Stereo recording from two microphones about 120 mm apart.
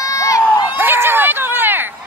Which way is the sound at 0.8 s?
20° right (ahead or behind).